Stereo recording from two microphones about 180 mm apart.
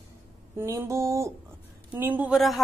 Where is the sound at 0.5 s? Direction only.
15° right (ahead or behind).